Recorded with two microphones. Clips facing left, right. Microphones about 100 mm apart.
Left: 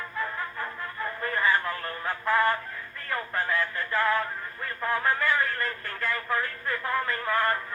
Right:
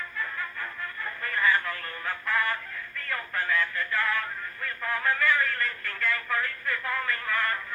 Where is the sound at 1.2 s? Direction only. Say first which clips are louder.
Even; 30° left (ahead or behind).